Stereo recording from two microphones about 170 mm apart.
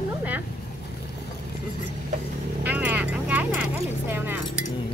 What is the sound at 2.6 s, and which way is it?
Vehicle, 10° right (ahead or behind).